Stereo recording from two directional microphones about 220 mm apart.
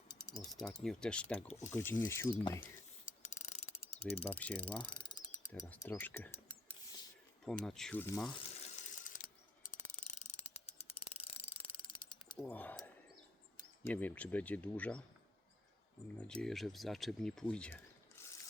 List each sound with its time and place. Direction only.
0.1 s pulleys: 15° left (ahead or behind)
0.6 s speech: centre (ahead or behind)
1.5 s speech: 30° left (ahead or behind)
1.7 s speech: 10° left (ahead or behind)
3.1 s pulleys: 30° left (ahead or behind)
4.4 s speech: 5° left (ahead or behind)
4.8 s ratchet: 20° left (ahead or behind)
5.6 s speech: 10° left (ahead or behind)
8.6 s ratchet: 35° left (ahead or behind)
12.4 s speech: 5° left (ahead or behind)
13.8 s speech: 5° left (ahead or behind)
16.1 s speech: 5° left (ahead or behind)